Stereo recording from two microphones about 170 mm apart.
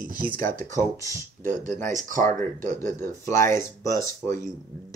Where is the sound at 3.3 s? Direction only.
15° left (ahead or behind).